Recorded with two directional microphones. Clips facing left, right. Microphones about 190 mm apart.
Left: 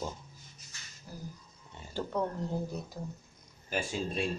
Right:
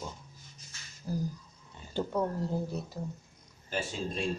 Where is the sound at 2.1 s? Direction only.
5° right (ahead or behind).